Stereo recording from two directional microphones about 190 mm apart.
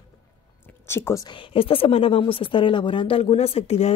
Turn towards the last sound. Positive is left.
turn(degrees=30)  # may be behind; listen again after turning